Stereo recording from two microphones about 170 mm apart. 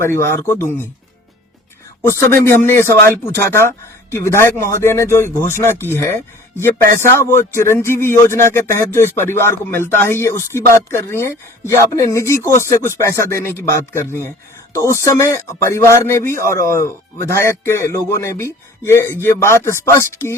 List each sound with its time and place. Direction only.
0.0 s music: 15° left (ahead or behind)
2.0 s music: 15° left (ahead or behind)